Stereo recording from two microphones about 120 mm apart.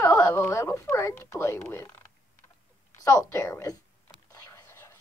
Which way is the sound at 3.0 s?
25° left (ahead or behind).